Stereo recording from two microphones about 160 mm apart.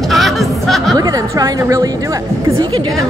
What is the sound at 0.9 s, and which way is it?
A woman's voice, 20° right (ahead or behind).